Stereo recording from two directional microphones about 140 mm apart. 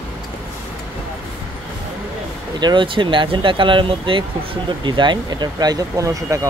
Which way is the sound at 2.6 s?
35° right (ahead or behind).